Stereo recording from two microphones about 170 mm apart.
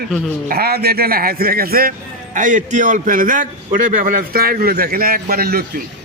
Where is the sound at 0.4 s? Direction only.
65° right (ahead or behind).